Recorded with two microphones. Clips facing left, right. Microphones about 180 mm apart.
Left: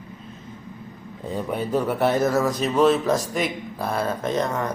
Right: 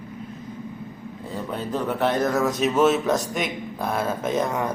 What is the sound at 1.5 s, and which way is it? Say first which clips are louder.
Speech: left 3 dB; 10° left (ahead or behind).